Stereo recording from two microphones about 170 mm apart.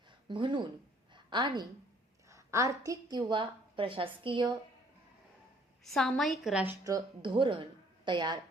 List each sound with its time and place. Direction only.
0.3 s a woman's voice: 30° right (ahead or behind)
1.1 s a sound: 25° right (ahead or behind)
2.3 s a woman's voice: 20° right (ahead or behind)
5.8 s a woman's voice: centre (ahead or behind)
6.8 s a woman's voice: 25° right (ahead or behind)